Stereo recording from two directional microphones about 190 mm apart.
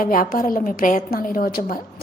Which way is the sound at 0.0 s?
45° left (ahead or behind).